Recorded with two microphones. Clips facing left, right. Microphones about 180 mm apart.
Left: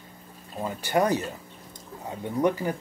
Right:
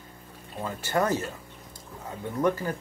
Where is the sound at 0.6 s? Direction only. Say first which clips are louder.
Left 2 dB; 15° left (ahead or behind).